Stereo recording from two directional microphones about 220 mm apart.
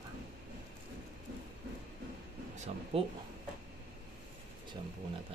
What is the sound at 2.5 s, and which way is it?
Speech, 30° right (ahead or behind).